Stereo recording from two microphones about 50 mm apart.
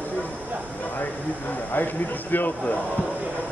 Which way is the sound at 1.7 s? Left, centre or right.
Left.